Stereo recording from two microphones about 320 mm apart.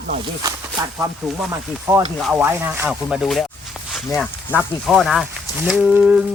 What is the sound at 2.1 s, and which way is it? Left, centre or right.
Speech, centre.